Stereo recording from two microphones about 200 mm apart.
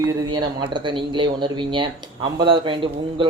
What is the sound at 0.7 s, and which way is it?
Speech, 25° right (ahead or behind).